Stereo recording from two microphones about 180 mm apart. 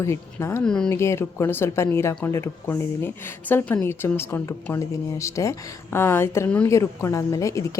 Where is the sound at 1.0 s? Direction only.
15° left (ahead or behind).